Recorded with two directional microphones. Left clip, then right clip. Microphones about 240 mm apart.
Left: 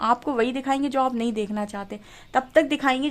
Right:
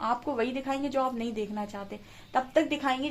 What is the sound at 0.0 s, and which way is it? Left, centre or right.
Speech, left.